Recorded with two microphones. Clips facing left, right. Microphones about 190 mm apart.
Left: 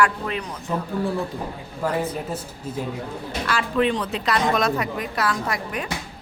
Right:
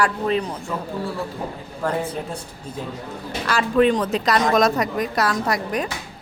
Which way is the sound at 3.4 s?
40° right (ahead or behind).